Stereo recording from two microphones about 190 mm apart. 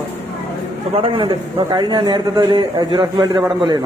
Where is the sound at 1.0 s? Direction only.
25° right (ahead or behind).